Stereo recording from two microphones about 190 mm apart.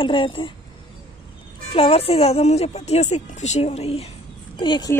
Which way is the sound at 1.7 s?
30° left (ahead or behind).